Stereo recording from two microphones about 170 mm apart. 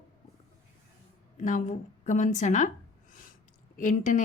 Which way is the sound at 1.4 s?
50° left (ahead or behind).